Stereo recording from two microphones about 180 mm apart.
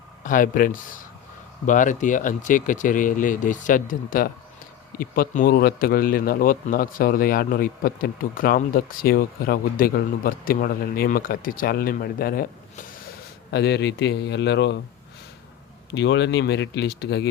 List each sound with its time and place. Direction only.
0.2 s speech: 50° left (ahead or behind)
13.5 s speech: 70° left (ahead or behind)
15.9 s speech: 75° left (ahead or behind)